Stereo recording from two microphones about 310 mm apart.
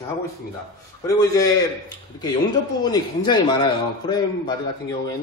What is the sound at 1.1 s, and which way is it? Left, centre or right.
Speech, centre.